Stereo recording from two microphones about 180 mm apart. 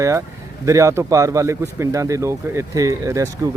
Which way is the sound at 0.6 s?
15° right (ahead or behind).